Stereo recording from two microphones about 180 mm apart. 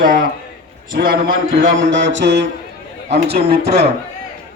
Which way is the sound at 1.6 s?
90° right.